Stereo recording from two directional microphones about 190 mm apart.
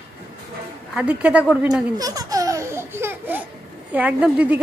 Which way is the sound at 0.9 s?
5° right (ahead or behind).